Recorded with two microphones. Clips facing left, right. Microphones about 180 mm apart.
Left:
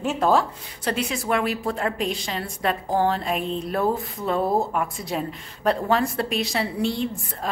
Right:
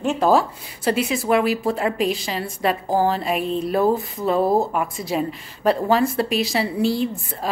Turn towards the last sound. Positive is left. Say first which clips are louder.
# right 3 dB
turn(degrees=-5)  # may be behind; listen again after turning